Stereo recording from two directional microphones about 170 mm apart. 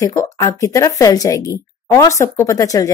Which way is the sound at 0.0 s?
20° left (ahead or behind).